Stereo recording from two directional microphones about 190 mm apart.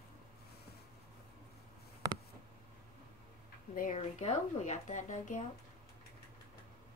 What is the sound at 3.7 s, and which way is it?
Speech, 40° left (ahead or behind).